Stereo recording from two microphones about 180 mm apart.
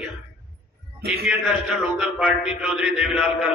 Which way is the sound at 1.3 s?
Centre (ahead or behind).